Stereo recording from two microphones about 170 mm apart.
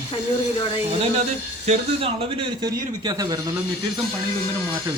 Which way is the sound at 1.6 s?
35° right (ahead or behind).